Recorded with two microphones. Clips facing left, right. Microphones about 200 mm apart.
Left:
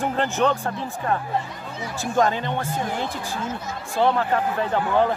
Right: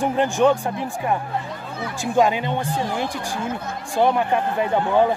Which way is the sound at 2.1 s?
15° right (ahead or behind).